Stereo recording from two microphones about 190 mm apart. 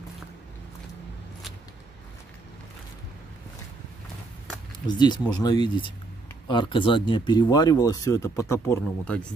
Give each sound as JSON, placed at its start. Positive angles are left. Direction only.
{"t": 4.8, "sound": "speech", "side_deg": 25}